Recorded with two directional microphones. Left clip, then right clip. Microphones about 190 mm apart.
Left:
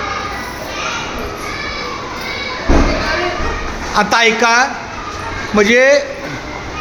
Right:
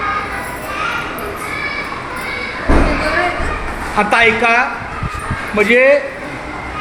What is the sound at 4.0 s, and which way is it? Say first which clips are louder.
A woman's voice: even; 30° left (ahead or behind).